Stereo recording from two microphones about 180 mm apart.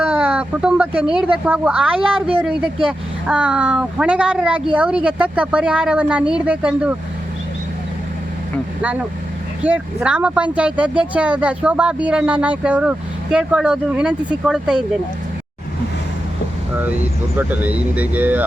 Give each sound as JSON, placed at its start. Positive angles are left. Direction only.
{"t": 0.0, "sound": "speech", "side_deg": -10}
{"t": 2.0, "sound": "speech", "side_deg": -30}
{"t": 3.2, "sound": "speech", "side_deg": -5}
{"t": 8.8, "sound": "speech", "side_deg": -10}
{"t": 16.7, "sound": "speech", "side_deg": -10}